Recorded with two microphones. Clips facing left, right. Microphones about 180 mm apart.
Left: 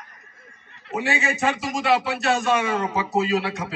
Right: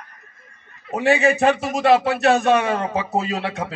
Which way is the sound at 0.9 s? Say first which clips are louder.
Right 8 dB; 60° right (ahead or behind).